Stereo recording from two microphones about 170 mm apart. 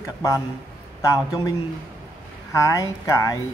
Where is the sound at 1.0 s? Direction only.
20° left (ahead or behind).